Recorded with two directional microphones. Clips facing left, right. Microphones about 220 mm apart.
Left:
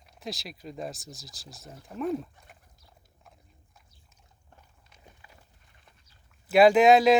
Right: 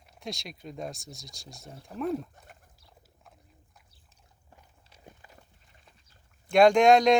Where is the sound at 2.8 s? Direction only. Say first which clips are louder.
Even; centre (ahead or behind).